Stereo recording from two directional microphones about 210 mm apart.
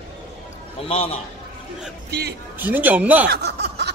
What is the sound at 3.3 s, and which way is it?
Snicker, 50° right (ahead or behind).